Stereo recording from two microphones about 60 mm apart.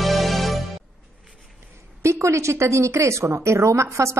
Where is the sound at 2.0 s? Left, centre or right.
Right.